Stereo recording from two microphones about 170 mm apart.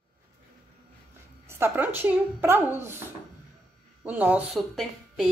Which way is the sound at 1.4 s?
15° right (ahead or behind).